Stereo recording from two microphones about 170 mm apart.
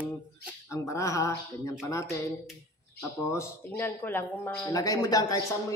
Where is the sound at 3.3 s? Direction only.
15° left (ahead or behind).